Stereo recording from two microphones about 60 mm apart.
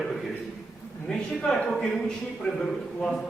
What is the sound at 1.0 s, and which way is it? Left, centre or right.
A man's voice, centre.